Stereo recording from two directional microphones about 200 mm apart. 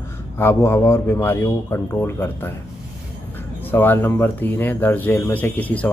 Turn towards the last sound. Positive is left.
turn(degrees=10)  # may be behind; listen again after turning